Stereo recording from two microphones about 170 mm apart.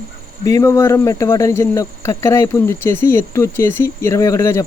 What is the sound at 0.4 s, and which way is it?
Speech, 20° left (ahead or behind).